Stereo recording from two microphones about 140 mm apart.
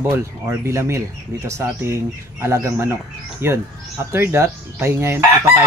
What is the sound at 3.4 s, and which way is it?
Chicken, 15° right (ahead or behind).